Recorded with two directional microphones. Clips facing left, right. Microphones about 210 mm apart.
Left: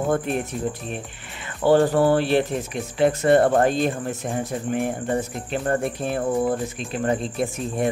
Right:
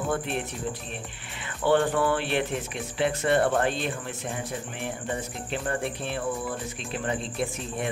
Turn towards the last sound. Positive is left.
turn(degrees=45)  # may be behind; listen again after turning